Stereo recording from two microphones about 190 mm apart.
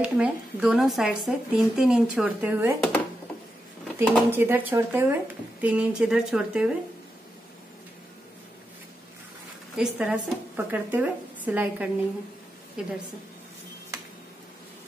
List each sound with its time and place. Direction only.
0.0 s speech: 5° right (ahead or behind)
3.8 s a sound: centre (ahead or behind)
4.3 s a woman's voice: 10° right (ahead or behind)
9.8 s a woman's voice: 5° right (ahead or behind)